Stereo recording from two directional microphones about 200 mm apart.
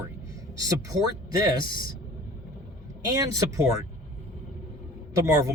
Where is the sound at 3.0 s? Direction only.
15° right (ahead or behind).